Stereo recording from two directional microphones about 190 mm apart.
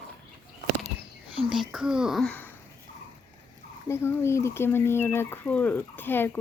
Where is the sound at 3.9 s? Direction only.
15° left (ahead or behind).